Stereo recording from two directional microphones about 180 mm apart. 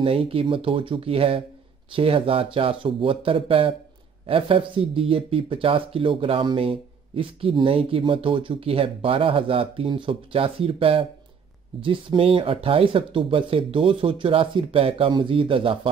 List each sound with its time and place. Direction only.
0.0 s speech: 30° right (ahead or behind)